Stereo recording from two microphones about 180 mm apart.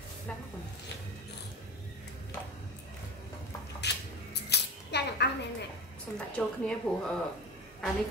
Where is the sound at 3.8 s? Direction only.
70° left (ahead or behind).